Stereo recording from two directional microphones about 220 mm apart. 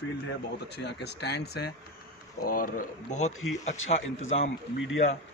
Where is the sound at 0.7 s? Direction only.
50° left (ahead or behind); by 3.3 s 35° left (ahead or behind).